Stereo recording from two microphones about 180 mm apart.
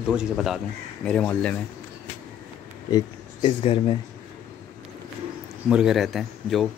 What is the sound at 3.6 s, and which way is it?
Speech, 30° left (ahead or behind).